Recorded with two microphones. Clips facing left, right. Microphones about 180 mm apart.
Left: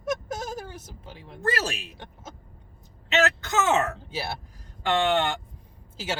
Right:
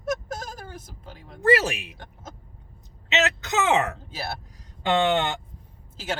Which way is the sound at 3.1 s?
20° right (ahead or behind).